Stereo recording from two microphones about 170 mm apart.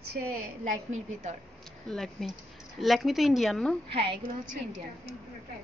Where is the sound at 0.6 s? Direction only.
50° right (ahead or behind).